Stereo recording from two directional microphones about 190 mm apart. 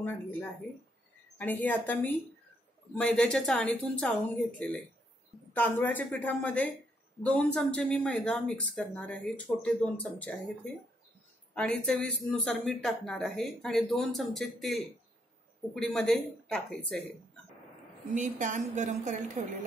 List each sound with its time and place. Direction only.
0.0 s speech: 10° left (ahead or behind)
5.5 s speech: 10° left (ahead or behind)
18.1 s a woman's voice: 45° right (ahead or behind)